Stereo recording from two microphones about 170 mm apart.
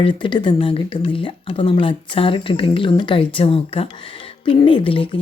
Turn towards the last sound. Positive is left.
turn(degrees=30)  # may be behind; listen again after turning